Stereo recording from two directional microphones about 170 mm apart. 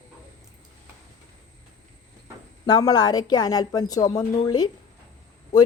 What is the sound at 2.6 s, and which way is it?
Speech, 25° left (ahead or behind).